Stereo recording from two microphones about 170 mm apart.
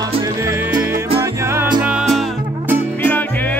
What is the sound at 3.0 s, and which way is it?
Music, 10° left (ahead or behind).